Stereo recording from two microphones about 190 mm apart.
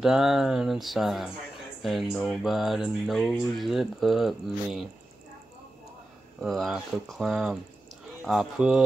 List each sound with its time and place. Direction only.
0.0 s speech: centre (ahead or behind)
6.4 s speech: centre (ahead or behind)